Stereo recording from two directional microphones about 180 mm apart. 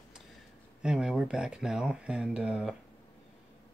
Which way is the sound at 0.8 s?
5° right (ahead or behind).